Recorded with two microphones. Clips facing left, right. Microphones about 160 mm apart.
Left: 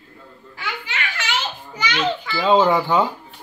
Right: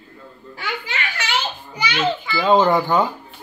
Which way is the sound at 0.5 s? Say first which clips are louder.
Right 2 dB; 35° right (ahead or behind).